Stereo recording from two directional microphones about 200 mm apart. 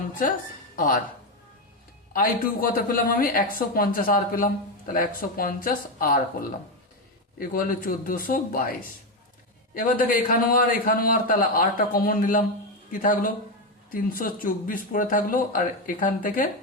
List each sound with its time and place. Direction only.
2.1 s speech: 45° left (ahead or behind)